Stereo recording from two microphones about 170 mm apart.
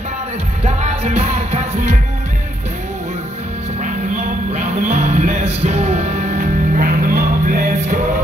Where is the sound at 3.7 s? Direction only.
45° right (ahead or behind).